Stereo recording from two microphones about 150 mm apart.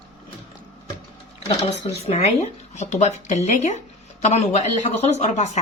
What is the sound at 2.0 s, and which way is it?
Speech, 45° left (ahead or behind).